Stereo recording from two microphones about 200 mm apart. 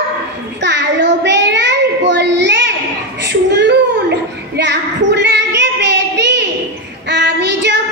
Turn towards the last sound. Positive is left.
turn(degrees=-60)  # may be behind; listen again after turning